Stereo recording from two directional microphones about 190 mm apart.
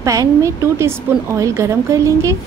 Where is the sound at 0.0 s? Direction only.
15° right (ahead or behind).